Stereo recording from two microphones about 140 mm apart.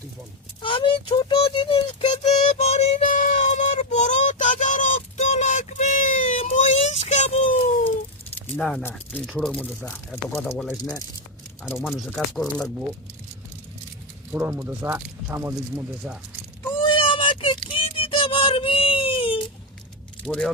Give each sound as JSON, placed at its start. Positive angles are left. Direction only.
{"t": 0.6, "sound": "speech", "side_deg": 35}
{"t": 1.4, "sound": "child singing", "side_deg": 40}
{"t": 6.4, "sound": "a sound", "side_deg": 55}
{"t": 8.4, "sound": "keys jangling", "side_deg": 5}
{"t": 8.8, "sound": "speech", "side_deg": 15}
{"t": 10.3, "sound": "speech", "side_deg": 15}
{"t": 10.6, "sound": "speech", "side_deg": 5}
{"t": 14.3, "sound": "speech", "side_deg": -15}
{"t": 16.7, "sound": "a sound", "side_deg": 40}
{"t": 20.2, "sound": "speech", "side_deg": 5}